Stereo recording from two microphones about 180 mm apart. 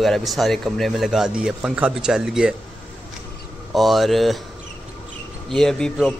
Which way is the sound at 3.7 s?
Centre (ahead or behind).